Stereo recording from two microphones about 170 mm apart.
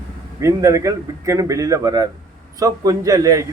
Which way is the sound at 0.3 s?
20° right (ahead or behind).